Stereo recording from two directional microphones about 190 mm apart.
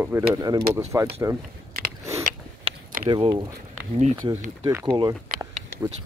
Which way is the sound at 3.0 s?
25° right (ahead or behind).